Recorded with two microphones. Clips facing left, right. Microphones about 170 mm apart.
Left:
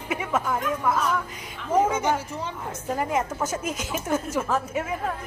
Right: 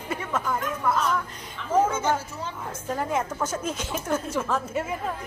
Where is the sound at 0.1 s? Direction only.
10° left (ahead or behind).